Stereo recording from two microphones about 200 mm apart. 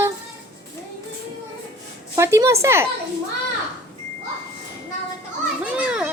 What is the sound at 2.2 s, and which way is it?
Speech, 15° right (ahead or behind).